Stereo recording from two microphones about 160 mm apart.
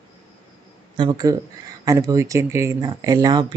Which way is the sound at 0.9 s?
25° right (ahead or behind).